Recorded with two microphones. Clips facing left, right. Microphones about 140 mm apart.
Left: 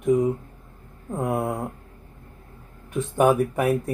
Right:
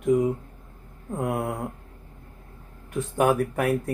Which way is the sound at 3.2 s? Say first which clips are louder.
Left 3 dB; 15° left (ahead or behind).